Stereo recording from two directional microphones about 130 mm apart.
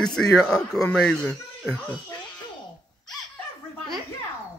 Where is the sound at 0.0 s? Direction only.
5° left (ahead or behind).